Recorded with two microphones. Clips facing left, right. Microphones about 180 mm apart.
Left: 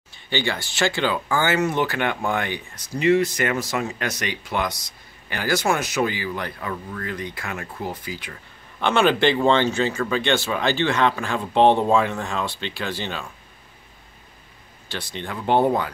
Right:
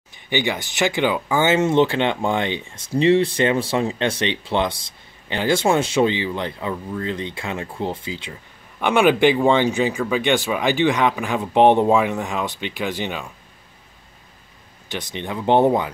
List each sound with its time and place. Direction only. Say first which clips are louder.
0.1 s speech: right 3 dB; 15° right (ahead or behind)
8.7 s speech: right 3 dB; 15° right (ahead or behind)
14.9 s speech: right 3 dB; 20° right (ahead or behind)